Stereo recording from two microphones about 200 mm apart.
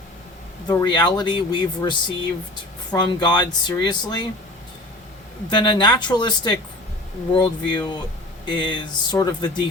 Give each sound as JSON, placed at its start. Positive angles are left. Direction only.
{"t": 0.7, "sound": "speech", "side_deg": 20}
{"t": 5.5, "sound": "speech", "side_deg": 25}